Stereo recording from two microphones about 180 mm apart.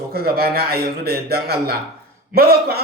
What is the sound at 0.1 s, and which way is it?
A man's voice, 60° right (ahead or behind).